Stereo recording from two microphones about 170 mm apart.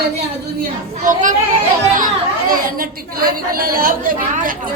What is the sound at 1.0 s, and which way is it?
Speech, 50° right (ahead or behind).